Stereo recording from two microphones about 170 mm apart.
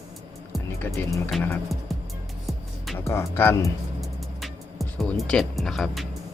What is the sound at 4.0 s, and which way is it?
Music, centre (ahead or behind).